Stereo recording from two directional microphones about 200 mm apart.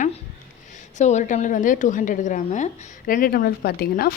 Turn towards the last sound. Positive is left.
turn(degrees=50)  # may be behind; listen again after turning